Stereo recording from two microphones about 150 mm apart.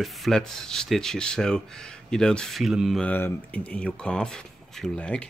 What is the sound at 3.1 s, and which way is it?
Speech, 10° left (ahead or behind).